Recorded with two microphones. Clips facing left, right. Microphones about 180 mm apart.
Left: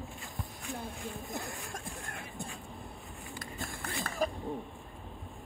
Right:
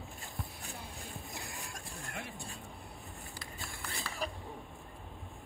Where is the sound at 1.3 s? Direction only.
50° left (ahead or behind).